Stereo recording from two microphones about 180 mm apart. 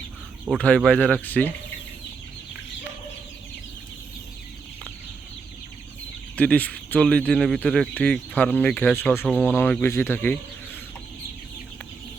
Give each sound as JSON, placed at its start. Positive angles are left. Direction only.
{"t": 0.6, "sound": "speech", "side_deg": 5}
{"t": 6.3, "sound": "speech", "side_deg": 10}